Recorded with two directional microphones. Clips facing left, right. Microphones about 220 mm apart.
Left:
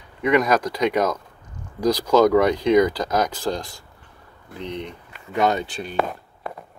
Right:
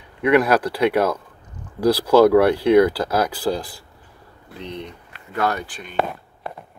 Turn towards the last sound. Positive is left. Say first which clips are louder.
# left 3 dB
turn(degrees=30)  # may be behind; listen again after turning